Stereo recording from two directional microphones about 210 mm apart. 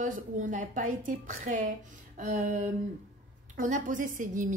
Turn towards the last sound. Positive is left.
turn(degrees=-40)  # may be behind; listen again after turning